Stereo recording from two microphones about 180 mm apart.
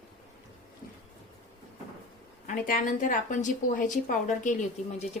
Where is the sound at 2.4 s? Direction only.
50° left (ahead or behind).